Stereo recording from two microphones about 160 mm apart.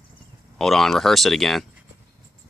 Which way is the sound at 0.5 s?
Centre (ahead or behind).